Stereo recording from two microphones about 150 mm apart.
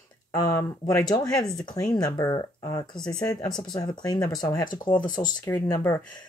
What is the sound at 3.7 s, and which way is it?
Speech, 30° left (ahead or behind).